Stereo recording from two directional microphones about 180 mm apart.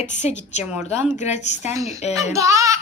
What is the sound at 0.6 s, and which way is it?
Speech, 5° right (ahead or behind).